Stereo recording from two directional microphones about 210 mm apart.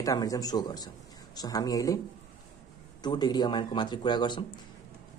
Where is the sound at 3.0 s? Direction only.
20° left (ahead or behind).